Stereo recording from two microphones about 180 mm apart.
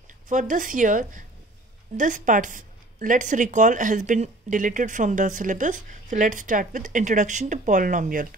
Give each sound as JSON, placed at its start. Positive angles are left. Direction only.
{"t": 0.3, "sound": "speech", "side_deg": -45}